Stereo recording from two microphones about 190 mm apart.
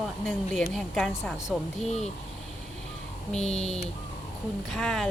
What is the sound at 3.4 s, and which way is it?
Speech, 35° left (ahead or behind).